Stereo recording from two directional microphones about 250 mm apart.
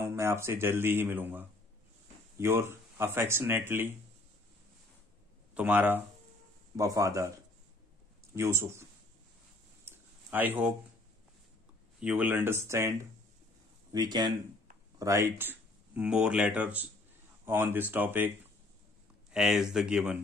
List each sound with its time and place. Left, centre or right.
0.0 s speech: centre
5.5 s speech: centre
8.4 s speech: centre
9.8 s a sound: centre
12.0 s speech: centre
13.9 s speech: centre
19.3 s speech: centre